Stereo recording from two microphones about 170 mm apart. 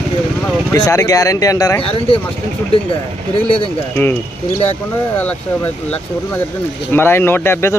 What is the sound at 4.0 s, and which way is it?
Speech, 10° left (ahead or behind).